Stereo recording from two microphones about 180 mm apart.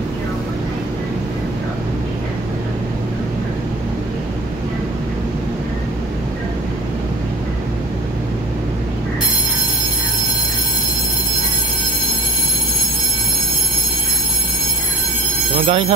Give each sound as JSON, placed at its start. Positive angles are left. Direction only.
{"t": 15.6, "sound": "speech", "side_deg": -35}